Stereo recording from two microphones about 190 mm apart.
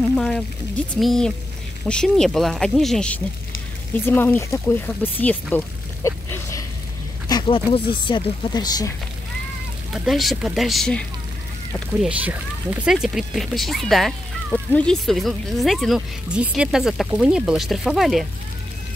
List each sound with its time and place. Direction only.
0.1 s speech: 5° left (ahead or behind)
6.0 s a sound: 15° left (ahead or behind)
7.2 s speech: 25° left (ahead or behind)
10.0 s speech: centre (ahead or behind)